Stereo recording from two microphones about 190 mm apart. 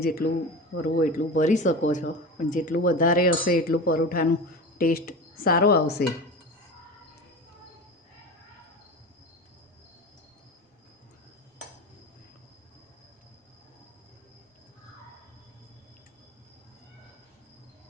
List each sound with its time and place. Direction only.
0.0 s speech: 55° left (ahead or behind)